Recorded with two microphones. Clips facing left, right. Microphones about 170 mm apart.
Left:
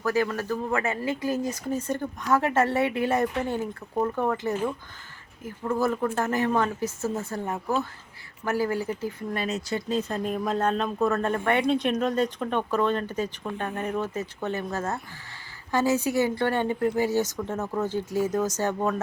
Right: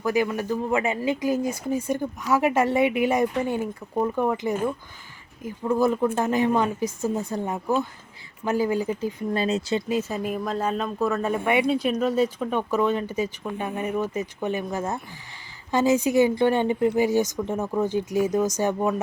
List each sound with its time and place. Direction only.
0.0 s speech: 15° right (ahead or behind)
9.4 s speech: 30° right (ahead or behind)
9.9 s speech: 5° right (ahead or behind)